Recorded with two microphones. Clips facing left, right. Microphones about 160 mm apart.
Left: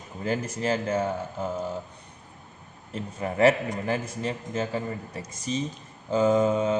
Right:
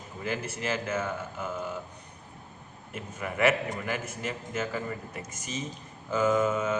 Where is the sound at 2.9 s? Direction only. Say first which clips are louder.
Left 5 dB; 35° left (ahead or behind).